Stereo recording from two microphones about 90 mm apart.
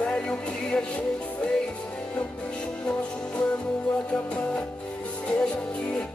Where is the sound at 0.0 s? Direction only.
10° left (ahead or behind).